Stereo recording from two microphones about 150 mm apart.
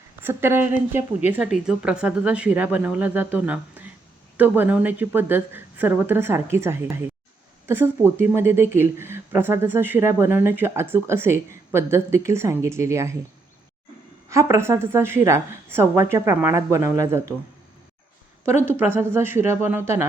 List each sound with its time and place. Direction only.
0.2 s speech: 15° right (ahead or behind)
14.3 s a woman's voice: 20° right (ahead or behind)
18.7 s speech: 15° right (ahead or behind)